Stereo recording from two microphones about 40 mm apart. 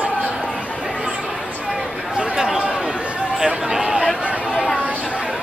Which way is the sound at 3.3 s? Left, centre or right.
Centre.